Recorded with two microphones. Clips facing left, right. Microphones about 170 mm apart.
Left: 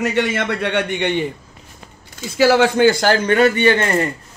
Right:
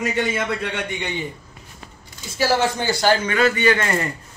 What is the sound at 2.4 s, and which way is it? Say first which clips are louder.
Speech: left 7 dB; 70° left (ahead or behind).